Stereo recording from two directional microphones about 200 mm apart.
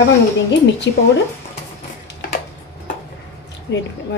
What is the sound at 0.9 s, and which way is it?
Speech, 65° left (ahead or behind).